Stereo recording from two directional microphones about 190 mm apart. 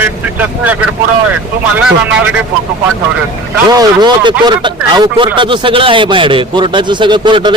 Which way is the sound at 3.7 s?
20° right (ahead or behind).